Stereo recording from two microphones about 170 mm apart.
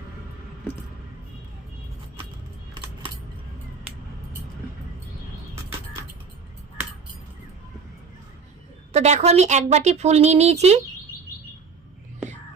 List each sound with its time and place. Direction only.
8.9 s speech: 40° right (ahead or behind)